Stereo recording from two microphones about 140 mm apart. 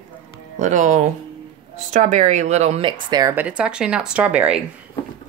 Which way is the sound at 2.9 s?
30° right (ahead or behind).